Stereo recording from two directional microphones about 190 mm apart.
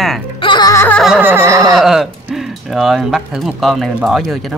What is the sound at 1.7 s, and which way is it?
Speech, centre (ahead or behind).